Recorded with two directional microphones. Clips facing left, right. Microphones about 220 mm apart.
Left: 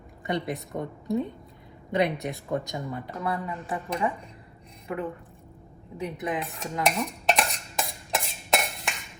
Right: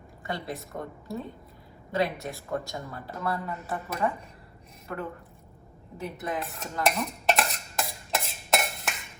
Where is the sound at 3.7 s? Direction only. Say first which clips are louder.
Left 1 dB; centre (ahead or behind).